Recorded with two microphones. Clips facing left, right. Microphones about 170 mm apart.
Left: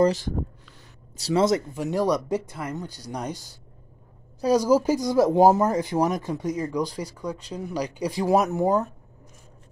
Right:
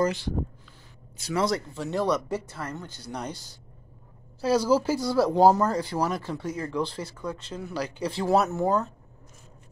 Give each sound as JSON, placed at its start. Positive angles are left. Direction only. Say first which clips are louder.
{"t": 0.0, "sound": "speech", "louder": "left 5 dB", "side_deg": 40}
{"t": 1.2, "sound": "speech", "louder": "left 5 dB", "side_deg": 25}